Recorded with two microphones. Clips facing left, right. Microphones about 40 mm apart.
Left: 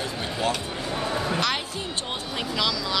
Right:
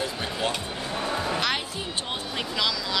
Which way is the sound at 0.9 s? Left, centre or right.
Centre.